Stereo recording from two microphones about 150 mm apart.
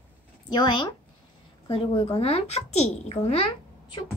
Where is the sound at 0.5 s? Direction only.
30° left (ahead or behind).